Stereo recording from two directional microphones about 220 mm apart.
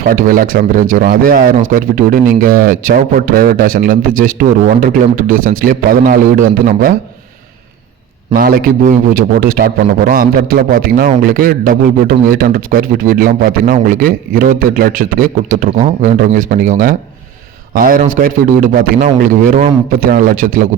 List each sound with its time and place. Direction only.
0.1 s speech: 40° right (ahead or behind)
8.3 s speech: 40° right (ahead or behind)